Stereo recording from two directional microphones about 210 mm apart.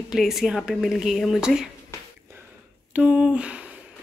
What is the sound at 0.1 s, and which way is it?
Speech, centre (ahead or behind).